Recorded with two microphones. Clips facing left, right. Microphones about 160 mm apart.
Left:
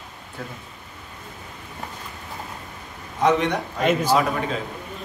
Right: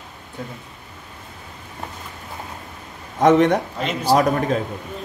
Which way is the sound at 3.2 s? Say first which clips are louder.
Right 6 dB; 50° right (ahead or behind).